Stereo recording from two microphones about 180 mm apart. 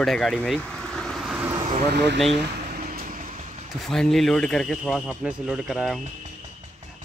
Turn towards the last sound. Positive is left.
turn(degrees=-5)  # may be behind; listen again after turning